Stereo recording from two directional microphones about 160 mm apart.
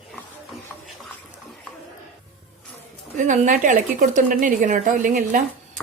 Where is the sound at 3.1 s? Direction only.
50° right (ahead or behind).